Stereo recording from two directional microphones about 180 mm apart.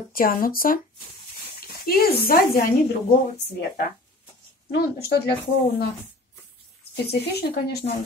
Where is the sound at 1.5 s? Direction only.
60° left (ahead or behind).